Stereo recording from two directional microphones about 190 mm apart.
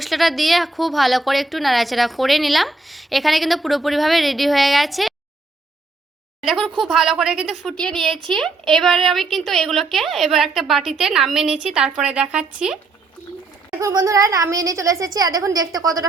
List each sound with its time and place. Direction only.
0.0 s speech: centre (ahead or behind)
6.4 s speech: centre (ahead or behind)
13.7 s a woman's voice: 15° right (ahead or behind)